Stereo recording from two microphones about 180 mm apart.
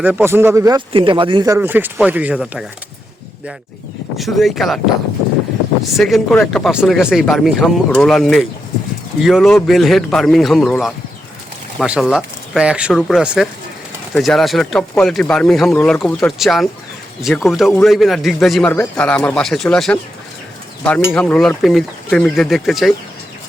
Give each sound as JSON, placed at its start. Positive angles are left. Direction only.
{"t": 0.0, "sound": "speech", "side_deg": -10}
{"t": 0.9, "sound": "a man's voice", "side_deg": -30}
{"t": 1.5, "sound": "speech", "side_deg": -10}
{"t": 4.2, "sound": "speech", "side_deg": 0}
{"t": 5.8, "sound": "speech", "side_deg": 0}